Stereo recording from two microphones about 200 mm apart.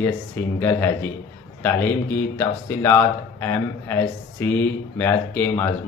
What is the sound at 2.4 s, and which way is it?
Speech, 10° left (ahead or behind).